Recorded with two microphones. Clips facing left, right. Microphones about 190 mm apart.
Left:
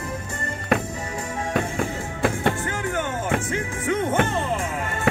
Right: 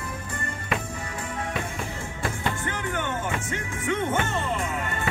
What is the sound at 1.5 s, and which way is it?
Music, 55° left (ahead or behind).